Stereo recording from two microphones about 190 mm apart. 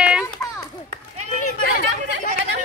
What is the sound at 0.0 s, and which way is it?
Children playing, 5° right (ahead or behind).